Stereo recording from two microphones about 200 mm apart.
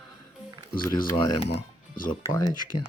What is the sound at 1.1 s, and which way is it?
Speech, 25° left (ahead or behind).